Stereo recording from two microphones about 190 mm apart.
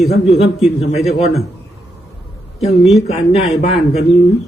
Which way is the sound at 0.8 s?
35° left (ahead or behind).